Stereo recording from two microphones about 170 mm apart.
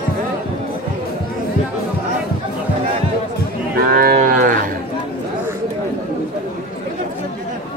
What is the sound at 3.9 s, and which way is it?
Cattle, 55° right (ahead or behind).